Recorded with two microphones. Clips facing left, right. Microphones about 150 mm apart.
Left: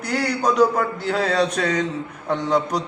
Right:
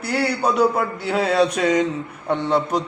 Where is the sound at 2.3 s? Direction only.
Centre (ahead or behind).